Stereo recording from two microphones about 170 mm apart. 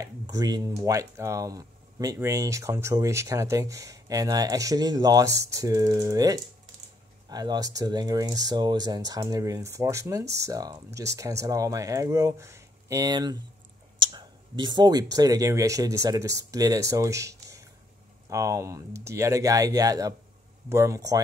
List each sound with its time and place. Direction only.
0.0 s speech: 20° right (ahead or behind)